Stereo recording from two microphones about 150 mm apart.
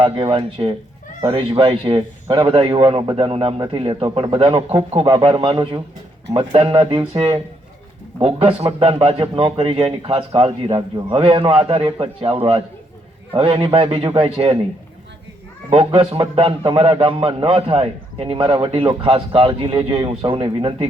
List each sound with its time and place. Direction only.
0.0 s a man's voice: 30° right (ahead or behind)
15.7 s a man's voice: 35° right (ahead or behind)